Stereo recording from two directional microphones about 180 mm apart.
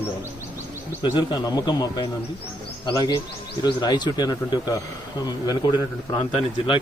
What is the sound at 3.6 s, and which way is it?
Speech, 25° left (ahead or behind).